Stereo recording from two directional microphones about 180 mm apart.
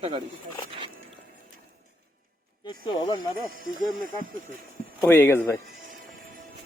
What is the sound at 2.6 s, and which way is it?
Speech, 25° left (ahead or behind).